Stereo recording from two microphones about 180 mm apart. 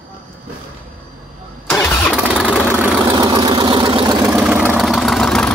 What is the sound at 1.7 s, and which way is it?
Vehicle, 15° left (ahead or behind).